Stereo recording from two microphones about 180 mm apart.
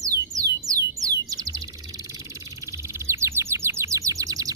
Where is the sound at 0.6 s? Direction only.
20° right (ahead or behind).